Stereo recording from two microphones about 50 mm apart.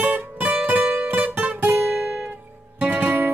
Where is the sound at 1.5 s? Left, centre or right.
Right.